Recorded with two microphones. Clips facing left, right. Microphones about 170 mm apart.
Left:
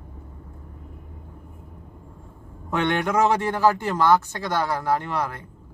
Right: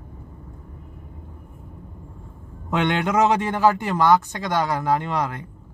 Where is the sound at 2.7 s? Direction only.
15° right (ahead or behind).